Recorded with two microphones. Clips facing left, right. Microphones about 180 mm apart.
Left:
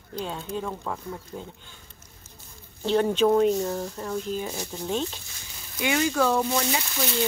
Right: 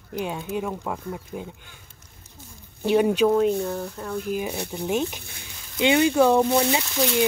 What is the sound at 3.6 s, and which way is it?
Speech, centre (ahead or behind).